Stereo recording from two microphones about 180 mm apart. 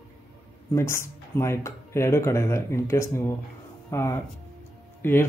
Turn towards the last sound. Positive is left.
turn(degrees=15)  # may be behind; listen again after turning